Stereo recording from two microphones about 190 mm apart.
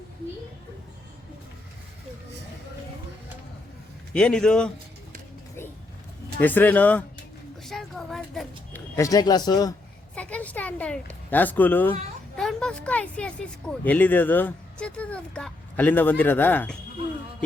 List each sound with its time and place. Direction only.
4.1 s a man's voice: 5° left (ahead or behind)
6.4 s speech: 10° left (ahead or behind)
7.6 s a sound: centre (ahead or behind)
9.0 s speech: 20° left (ahead or behind)
10.2 s a sound: 5° left (ahead or behind)
12.4 s speech: 5° left (ahead or behind)